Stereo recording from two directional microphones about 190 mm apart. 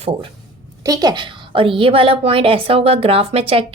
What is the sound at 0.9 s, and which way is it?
A woman's voice, 20° right (ahead or behind).